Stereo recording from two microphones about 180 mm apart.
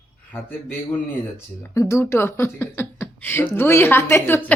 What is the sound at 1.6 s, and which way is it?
Speech, 15° left (ahead or behind).